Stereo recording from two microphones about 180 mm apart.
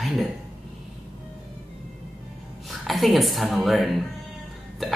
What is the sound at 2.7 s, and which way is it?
A man's voice, centre (ahead or behind).